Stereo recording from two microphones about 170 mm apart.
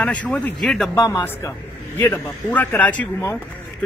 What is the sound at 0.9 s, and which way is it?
Speech, 15° left (ahead or behind).